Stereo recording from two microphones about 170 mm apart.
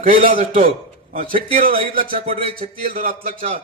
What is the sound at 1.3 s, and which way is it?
Speech, 30° right (ahead or behind).